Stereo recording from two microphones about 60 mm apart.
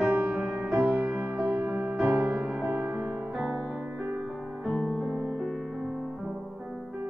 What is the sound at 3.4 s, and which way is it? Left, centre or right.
Music, centre.